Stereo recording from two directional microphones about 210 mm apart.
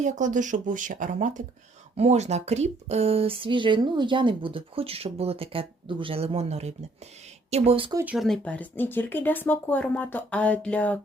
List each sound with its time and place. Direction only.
0.0 s speech: 35° right (ahead or behind)
7.9 s speech: 5° right (ahead or behind)